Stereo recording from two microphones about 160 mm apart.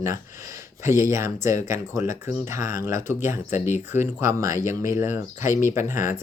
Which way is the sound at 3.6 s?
50° left (ahead or behind).